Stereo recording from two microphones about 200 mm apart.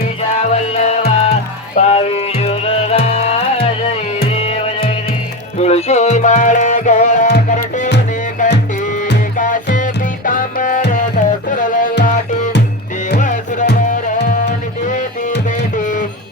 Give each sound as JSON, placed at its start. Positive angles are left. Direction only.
{"t": 0.7, "sound": "music", "side_deg": 30}
{"t": 8.4, "sound": "music", "side_deg": 40}
{"t": 15.4, "sound": "music", "side_deg": 40}